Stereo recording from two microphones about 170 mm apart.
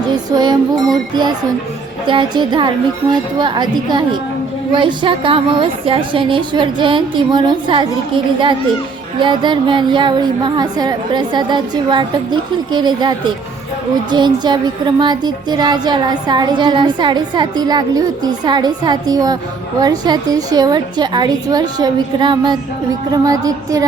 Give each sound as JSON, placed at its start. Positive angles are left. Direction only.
{"t": 0.3, "sound": "speech", "side_deg": -25}
{"t": 2.0, "sound": "speech", "side_deg": -30}